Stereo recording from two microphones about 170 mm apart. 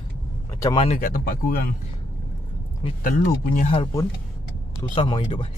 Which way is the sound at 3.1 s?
45° left (ahead or behind).